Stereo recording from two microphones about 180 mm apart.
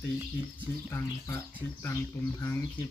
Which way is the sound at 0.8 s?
10° left (ahead or behind).